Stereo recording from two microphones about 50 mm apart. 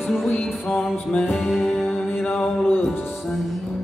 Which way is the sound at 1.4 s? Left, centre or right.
Centre.